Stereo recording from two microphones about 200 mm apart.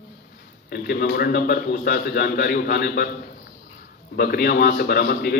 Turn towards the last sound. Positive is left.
turn(degrees=50)  # may be behind; listen again after turning